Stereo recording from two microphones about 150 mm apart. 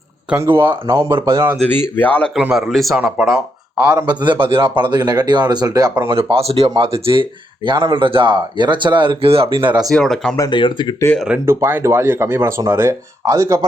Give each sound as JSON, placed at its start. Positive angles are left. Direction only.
{"t": 0.3, "sound": "speech", "side_deg": -15}
{"t": 1.7, "sound": "speech", "side_deg": 15}
{"t": 2.3, "sound": "speech", "side_deg": -5}
{"t": 3.9, "sound": "speech", "side_deg": -30}
{"t": 6.1, "sound": "speech", "side_deg": -40}
{"t": 9.9, "sound": "speech", "side_deg": 5}
{"t": 10.3, "sound": "speech", "side_deg": 30}
{"t": 11.4, "sound": "speech", "side_deg": -15}